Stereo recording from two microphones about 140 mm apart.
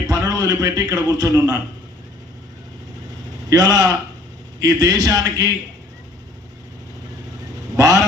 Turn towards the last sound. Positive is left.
turn(degrees=-25)  # may be behind; listen again after turning